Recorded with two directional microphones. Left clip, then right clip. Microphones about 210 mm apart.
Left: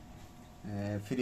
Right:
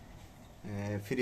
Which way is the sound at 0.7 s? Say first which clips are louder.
Right 1 dB; 15° right (ahead or behind).